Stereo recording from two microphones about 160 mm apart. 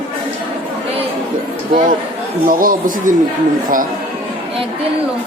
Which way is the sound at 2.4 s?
60° right (ahead or behind).